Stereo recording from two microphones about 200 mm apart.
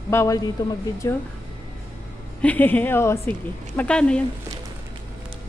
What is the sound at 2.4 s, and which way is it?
Speech, 10° left (ahead or behind).